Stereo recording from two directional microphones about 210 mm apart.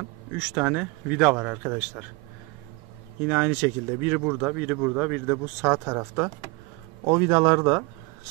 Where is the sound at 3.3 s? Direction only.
10° right (ahead or behind).